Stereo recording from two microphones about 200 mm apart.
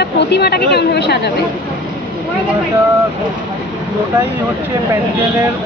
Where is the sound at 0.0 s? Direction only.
55° left (ahead or behind).